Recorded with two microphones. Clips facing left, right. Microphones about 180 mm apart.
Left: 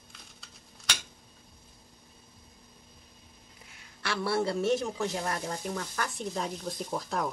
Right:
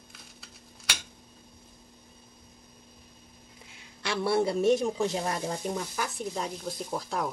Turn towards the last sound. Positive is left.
turn(degrees=0)  # may be behind; listen again after turning